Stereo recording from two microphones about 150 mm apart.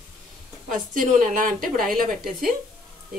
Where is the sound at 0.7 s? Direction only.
65° right (ahead or behind).